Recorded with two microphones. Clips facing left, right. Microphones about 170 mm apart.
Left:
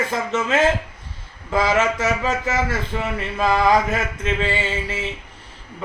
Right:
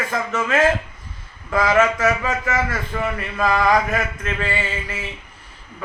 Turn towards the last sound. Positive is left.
turn(degrees=25)  # may be behind; listen again after turning